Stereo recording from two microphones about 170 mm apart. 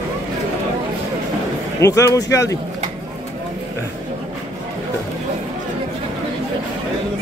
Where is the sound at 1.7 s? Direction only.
15° left (ahead or behind).